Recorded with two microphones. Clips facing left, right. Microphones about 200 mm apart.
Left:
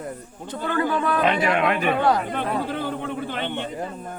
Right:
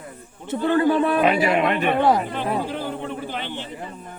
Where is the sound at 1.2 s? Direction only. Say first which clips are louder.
Right 2 dB; 5° right (ahead or behind).